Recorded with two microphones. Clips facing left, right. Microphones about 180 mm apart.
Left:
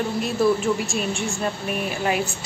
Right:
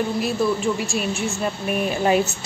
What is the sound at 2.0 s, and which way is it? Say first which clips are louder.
Speech: right 5 dB; 30° right (ahead or behind).